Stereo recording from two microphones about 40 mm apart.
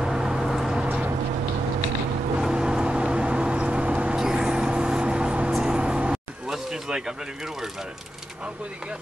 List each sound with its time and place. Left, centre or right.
0.0 s vehicle: centre
0.5 s a sound: centre
2.5 s vehicle: right
4.2 s vehicle: centre
5.5 s vehicle: centre
5.8 s vehicle: right